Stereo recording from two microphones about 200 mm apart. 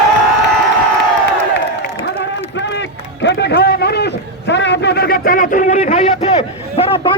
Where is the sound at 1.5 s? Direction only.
60° left (ahead or behind).